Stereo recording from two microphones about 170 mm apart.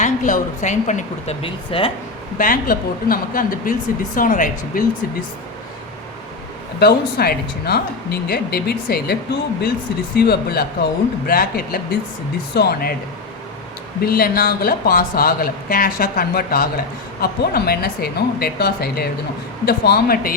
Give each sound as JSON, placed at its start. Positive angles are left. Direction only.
{"t": 0.0, "sound": "speech", "side_deg": 50}
{"t": 2.4, "sound": "speech", "side_deg": 55}
{"t": 6.7, "sound": "speech", "side_deg": 65}
{"t": 14.0, "sound": "speech", "side_deg": 60}